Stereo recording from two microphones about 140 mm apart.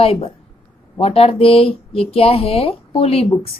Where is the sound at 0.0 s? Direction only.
45° left (ahead or behind).